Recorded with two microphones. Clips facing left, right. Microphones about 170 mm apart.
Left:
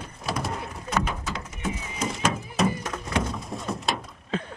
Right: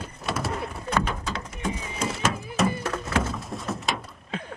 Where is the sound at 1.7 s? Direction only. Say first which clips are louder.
Right 2 dB; 30° right (ahead or behind).